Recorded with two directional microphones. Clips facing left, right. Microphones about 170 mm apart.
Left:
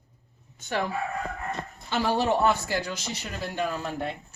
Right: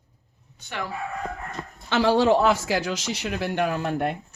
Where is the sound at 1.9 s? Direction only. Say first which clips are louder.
Right 6 dB; 85° right; by 4.2 s 60° right (ahead or behind).